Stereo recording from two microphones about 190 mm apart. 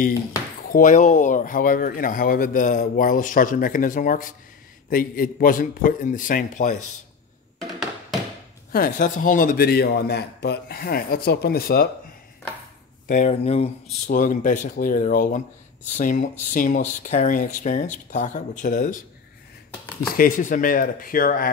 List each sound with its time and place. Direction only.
0.7 s speech: 45° left (ahead or behind)
8.7 s speech: 45° left (ahead or behind)
13.1 s speech: 40° left (ahead or behind)
14.0 s speech: 45° left (ahead or behind)
20.0 s speech: 50° left (ahead or behind)